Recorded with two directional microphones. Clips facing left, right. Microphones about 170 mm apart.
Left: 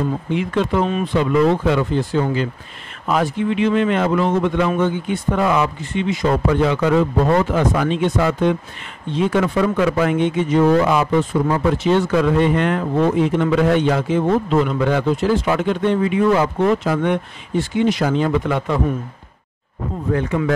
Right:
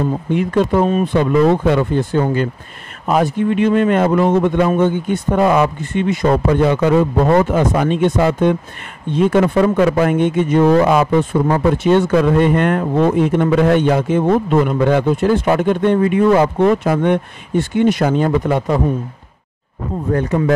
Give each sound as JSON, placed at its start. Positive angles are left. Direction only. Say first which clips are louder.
{"t": 0.3, "sound": "speech", "louder": "right 5 dB", "side_deg": -45}
{"t": 20.1, "sound": "speech", "louder": "right 3 dB", "side_deg": -40}